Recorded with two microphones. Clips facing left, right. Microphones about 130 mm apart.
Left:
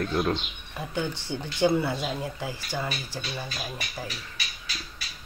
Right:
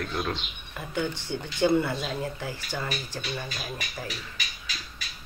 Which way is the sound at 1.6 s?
10° left (ahead or behind).